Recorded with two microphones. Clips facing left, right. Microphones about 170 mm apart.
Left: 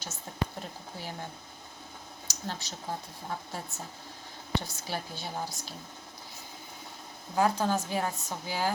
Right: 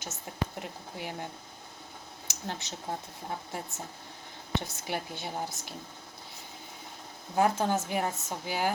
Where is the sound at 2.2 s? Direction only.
20° right (ahead or behind).